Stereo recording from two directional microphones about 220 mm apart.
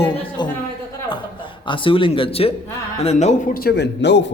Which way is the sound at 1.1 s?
20° left (ahead or behind).